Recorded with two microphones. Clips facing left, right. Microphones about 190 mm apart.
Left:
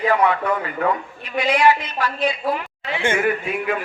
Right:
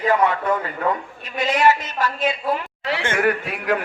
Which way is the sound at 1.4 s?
45° right (ahead or behind).